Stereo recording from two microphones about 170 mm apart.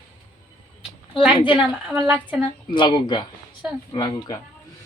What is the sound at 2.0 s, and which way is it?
Speech, 10° right (ahead or behind).